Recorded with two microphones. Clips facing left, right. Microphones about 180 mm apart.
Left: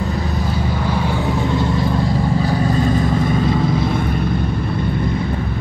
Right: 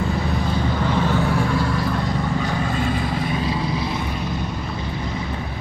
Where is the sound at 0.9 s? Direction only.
15° left (ahead or behind).